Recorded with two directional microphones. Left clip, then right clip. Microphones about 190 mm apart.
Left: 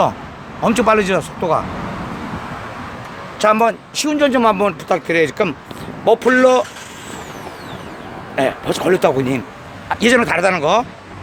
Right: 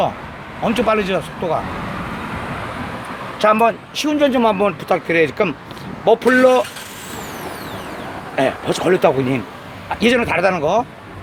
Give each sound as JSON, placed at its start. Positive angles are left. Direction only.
{"t": 0.6, "sound": "speech", "side_deg": 20}
{"t": 3.3, "sound": "speech", "side_deg": 15}
{"t": 8.4, "sound": "speech", "side_deg": 20}